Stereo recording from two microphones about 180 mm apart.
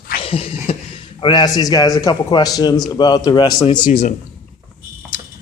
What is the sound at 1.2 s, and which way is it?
A man's voice, 25° left (ahead or behind).